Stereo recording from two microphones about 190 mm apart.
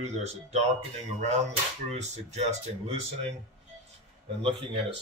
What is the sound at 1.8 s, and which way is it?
Speech, 35° right (ahead or behind).